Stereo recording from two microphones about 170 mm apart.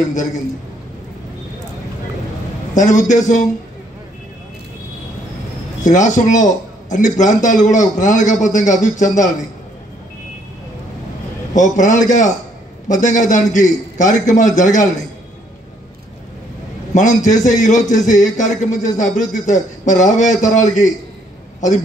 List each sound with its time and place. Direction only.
0.1 s a man's voice: 45° left (ahead or behind)
2.7 s a man's voice: 45° left (ahead or behind)
5.9 s a man's voice: 45° left (ahead or behind)
11.5 s a man's voice: 45° left (ahead or behind)
16.9 s a man's voice: 45° left (ahead or behind)